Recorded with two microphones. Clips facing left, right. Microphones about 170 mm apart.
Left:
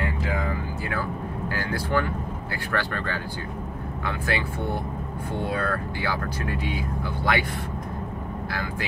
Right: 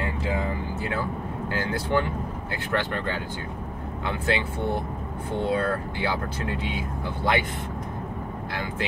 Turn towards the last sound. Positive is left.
turn(degrees=-25)  # may be behind; listen again after turning